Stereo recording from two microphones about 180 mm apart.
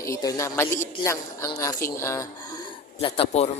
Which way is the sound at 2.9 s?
30° left (ahead or behind).